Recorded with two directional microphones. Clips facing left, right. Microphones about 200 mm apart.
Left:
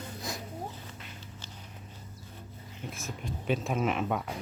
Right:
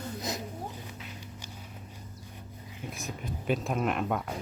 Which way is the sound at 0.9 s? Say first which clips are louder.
Right 3 dB; 15° right (ahead or behind).